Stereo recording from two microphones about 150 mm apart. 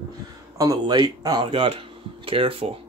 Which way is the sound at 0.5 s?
25° right (ahead or behind).